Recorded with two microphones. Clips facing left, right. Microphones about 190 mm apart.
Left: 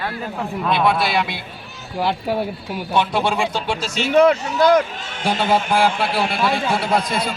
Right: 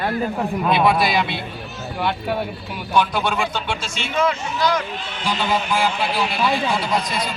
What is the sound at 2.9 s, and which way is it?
Speech, 25° left (ahead or behind).